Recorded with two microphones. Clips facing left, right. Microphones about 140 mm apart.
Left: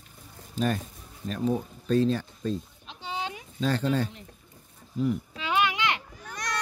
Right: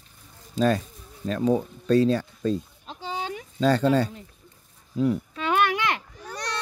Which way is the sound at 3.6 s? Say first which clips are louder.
Right 6 dB; 90° right.